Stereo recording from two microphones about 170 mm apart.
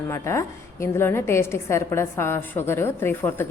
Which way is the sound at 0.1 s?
15° left (ahead or behind).